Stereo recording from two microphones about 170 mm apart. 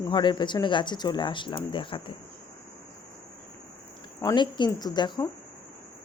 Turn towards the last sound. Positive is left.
turn(degrees=25)  # may be behind; listen again after turning